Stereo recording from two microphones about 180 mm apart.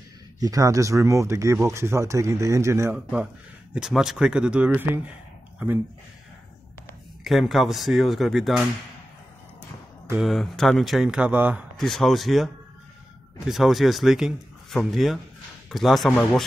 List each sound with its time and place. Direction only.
0.4 s speech: 20° right (ahead or behind)
7.2 s speech: centre (ahead or behind)
10.0 s speech: 5° right (ahead or behind)
13.5 s speech: centre (ahead or behind)